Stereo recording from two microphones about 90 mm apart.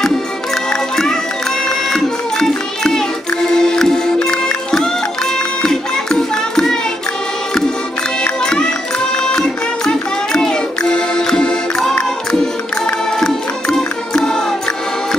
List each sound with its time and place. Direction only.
1.9 s music: 5° left (ahead or behind)
5.6 s music: 10° left (ahead or behind)
8.2 s music: 10° left (ahead or behind)